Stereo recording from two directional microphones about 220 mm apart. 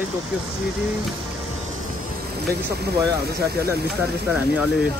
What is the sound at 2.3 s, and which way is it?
Speech, 45° right (ahead or behind).